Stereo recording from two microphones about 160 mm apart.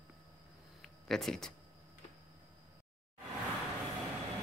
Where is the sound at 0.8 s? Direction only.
5° left (ahead or behind).